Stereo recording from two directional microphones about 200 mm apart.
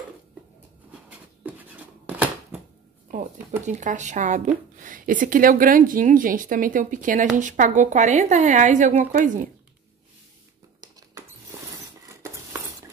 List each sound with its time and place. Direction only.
1.4 s a sound: 10° right (ahead or behind)
3.6 s speech: 40° right (ahead or behind)
10.8 s mouse: 20° right (ahead or behind)